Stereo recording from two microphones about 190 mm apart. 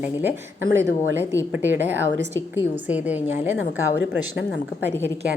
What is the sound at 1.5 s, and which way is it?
A woman's voice, 10° right (ahead or behind).